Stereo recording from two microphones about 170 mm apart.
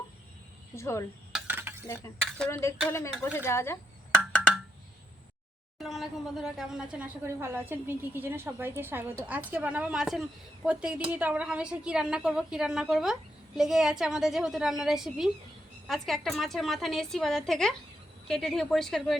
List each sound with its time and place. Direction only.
0.8 s speech: 15° left (ahead or behind)
1.3 s a sound: 10° right (ahead or behind)
2.5 s speech: 15° left (ahead or behind)
5.8 s a woman's voice: centre (ahead or behind)